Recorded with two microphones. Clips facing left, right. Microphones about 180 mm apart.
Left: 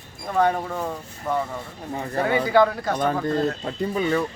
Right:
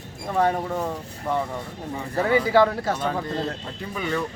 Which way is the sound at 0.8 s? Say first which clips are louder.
Right 1 dB; centre (ahead or behind).